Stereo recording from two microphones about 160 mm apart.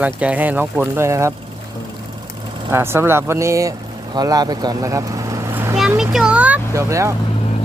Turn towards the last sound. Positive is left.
turn(degrees=-20)  # may be behind; listen again after turning